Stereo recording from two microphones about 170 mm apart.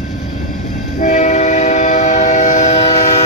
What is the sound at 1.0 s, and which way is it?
Train, 45° left (ahead or behind).